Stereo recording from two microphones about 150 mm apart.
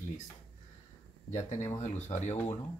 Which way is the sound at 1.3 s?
55° left (ahead or behind).